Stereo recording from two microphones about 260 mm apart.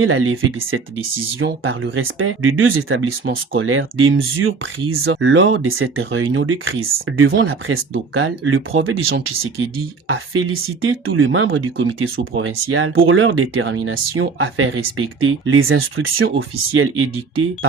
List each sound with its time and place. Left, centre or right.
0.0 s speech: right